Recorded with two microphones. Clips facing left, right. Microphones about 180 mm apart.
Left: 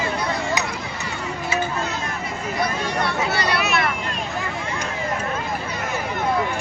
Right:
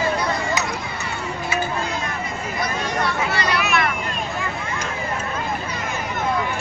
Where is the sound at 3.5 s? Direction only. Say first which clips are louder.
Right 1 dB; 35° left (ahead or behind).